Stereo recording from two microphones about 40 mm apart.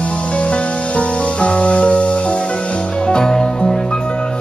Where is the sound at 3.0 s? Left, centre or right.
Centre.